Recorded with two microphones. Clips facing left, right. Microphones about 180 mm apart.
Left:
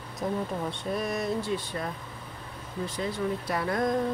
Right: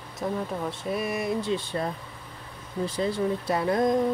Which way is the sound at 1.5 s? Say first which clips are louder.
Right 3 dB; 30° right (ahead or behind).